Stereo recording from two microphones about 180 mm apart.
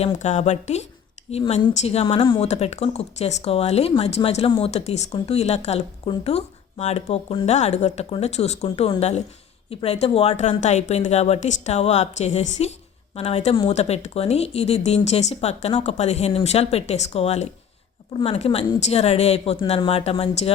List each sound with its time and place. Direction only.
0.0 s speech: 40° left (ahead or behind)